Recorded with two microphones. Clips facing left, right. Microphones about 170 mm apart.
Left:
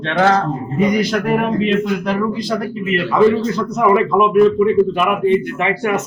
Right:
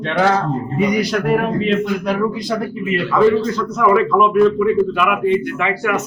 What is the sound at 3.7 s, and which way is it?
A man's voice, 15° left (ahead or behind).